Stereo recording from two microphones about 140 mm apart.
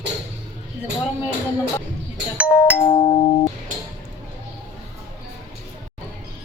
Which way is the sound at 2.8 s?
35° left (ahead or behind).